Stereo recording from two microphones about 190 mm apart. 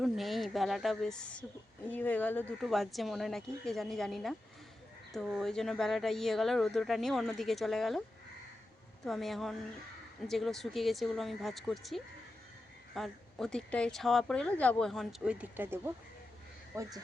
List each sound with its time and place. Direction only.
0.0 s speech: centre (ahead or behind)
9.0 s speech: centre (ahead or behind); by 16.9 s 15° right (ahead or behind)